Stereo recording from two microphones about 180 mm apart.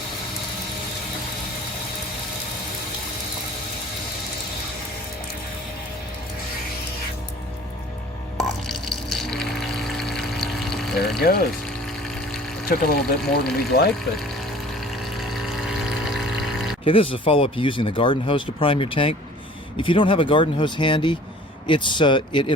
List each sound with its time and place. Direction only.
8.4 s water: centre (ahead or behind)
11.2 s speech: 55° left (ahead or behind)
12.6 s speech: 55° left (ahead or behind)
15.0 s a sound: centre (ahead or behind)
16.8 s speech: 30° left (ahead or behind)